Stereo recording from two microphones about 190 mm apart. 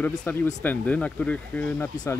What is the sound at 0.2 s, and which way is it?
Speech, 10° left (ahead or behind).